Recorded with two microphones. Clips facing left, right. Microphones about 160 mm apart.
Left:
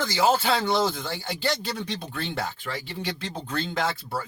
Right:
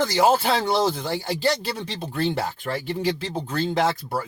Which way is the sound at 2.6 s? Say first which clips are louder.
Right 6 dB; 50° right (ahead or behind).